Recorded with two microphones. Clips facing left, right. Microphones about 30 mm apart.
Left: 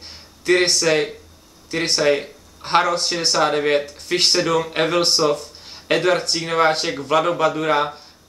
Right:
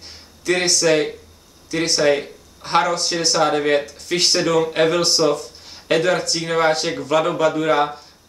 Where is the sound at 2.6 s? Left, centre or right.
Centre.